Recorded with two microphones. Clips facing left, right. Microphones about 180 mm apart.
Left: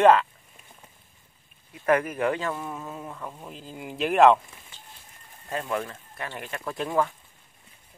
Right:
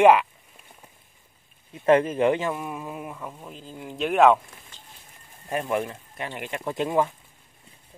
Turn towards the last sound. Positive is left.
turn(degrees=-20)  # may be behind; listen again after turning